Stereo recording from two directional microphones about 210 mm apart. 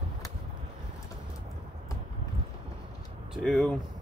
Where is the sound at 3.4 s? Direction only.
Centre (ahead or behind).